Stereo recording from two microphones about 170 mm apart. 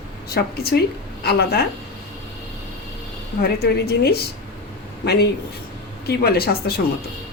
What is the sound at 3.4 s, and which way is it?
Speech, 70° left (ahead or behind).